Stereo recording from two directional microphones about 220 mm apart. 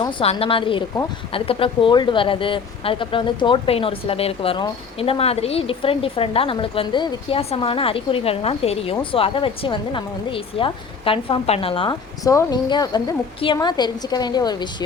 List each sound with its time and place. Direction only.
0.0 s a woman's voice: 25° left (ahead or behind)